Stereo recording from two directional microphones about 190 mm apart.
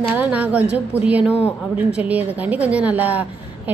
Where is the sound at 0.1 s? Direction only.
10° right (ahead or behind).